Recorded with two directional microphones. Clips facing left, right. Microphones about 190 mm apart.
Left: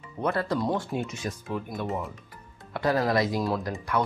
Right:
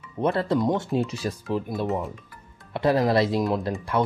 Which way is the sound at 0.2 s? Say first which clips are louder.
Right 4 dB; 25° right (ahead or behind).